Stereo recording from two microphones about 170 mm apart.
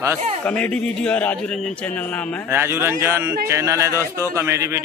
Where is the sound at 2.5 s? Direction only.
15° right (ahead or behind).